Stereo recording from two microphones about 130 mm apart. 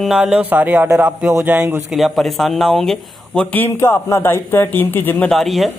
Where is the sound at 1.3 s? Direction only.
25° right (ahead or behind).